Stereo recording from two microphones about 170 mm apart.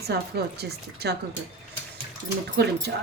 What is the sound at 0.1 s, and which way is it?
Speech, 70° right (ahead or behind).